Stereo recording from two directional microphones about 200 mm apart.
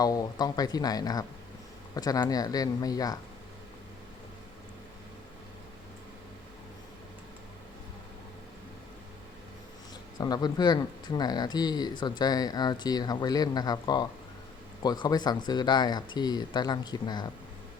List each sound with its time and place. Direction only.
0.0 s speech: 20° left (ahead or behind)
10.2 s speech: 20° left (ahead or behind)